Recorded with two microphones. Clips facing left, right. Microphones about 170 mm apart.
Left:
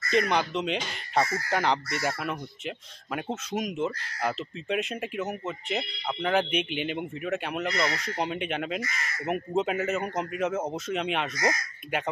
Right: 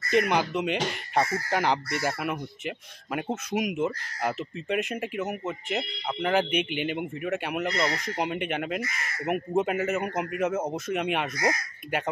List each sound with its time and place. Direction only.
0.1 s speech: 10° right (ahead or behind)